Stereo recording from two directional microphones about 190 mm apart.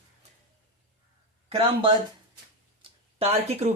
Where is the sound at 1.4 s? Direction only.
30° right (ahead or behind).